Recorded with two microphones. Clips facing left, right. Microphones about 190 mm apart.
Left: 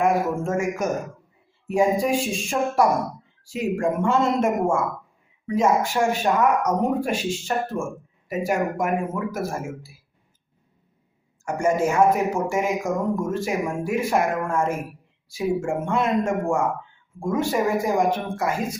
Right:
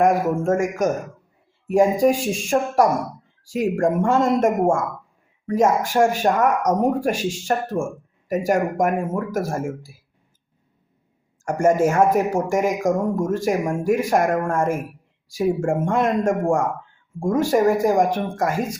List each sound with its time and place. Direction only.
0.0 s speech: 45° right (ahead or behind)
5.5 s speech: 45° right (ahead or behind)
11.4 s speech: 45° right (ahead or behind)